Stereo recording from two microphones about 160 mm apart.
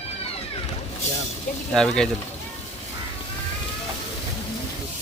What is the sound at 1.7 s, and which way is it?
Speech, 5° left (ahead or behind).